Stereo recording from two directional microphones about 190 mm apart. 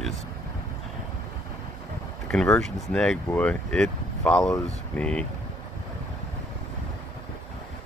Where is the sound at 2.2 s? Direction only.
5° left (ahead or behind).